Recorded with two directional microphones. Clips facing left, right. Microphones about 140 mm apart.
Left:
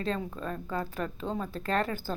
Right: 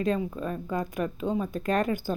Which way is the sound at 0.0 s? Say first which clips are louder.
Right 5 dB; 15° right (ahead or behind).